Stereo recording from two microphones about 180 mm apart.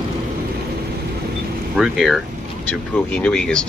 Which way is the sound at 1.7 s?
Centre (ahead or behind).